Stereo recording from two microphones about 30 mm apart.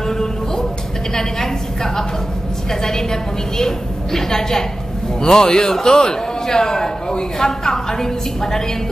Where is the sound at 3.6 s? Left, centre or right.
Centre.